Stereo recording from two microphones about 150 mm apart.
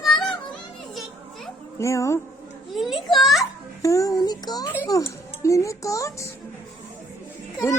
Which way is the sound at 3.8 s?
20° left (ahead or behind).